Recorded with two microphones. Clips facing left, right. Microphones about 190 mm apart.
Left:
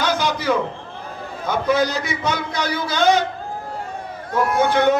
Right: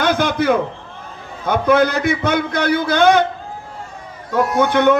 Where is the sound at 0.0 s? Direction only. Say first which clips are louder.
Right 5 dB; 55° right (ahead or behind).